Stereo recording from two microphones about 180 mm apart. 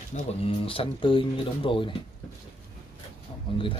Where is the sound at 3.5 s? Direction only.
30° left (ahead or behind).